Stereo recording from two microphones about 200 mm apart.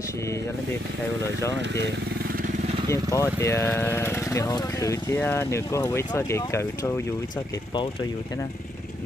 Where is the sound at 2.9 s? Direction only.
15° left (ahead or behind).